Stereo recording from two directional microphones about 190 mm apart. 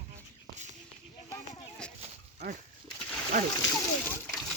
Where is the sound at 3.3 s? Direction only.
40° right (ahead or behind).